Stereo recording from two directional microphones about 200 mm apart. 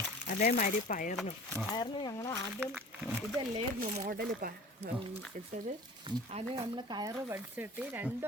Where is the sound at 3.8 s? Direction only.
45° right (ahead or behind).